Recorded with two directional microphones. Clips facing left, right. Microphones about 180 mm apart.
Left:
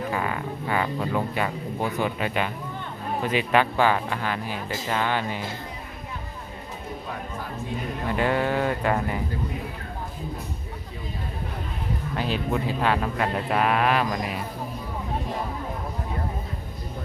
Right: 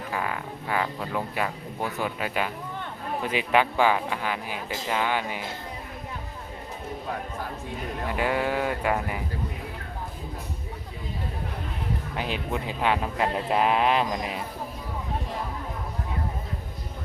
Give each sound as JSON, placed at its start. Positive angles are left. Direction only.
{"t": 0.1, "sound": "speech", "side_deg": 0}
{"t": 8.1, "sound": "speech", "side_deg": -10}
{"t": 12.1, "sound": "speech", "side_deg": -15}